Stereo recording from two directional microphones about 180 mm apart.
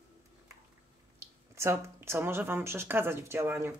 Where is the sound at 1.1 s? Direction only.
15° right (ahead or behind).